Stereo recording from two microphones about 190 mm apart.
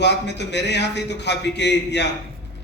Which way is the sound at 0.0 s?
65° left (ahead or behind).